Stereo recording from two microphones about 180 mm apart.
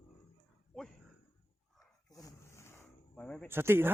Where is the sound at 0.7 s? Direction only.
Centre (ahead or behind).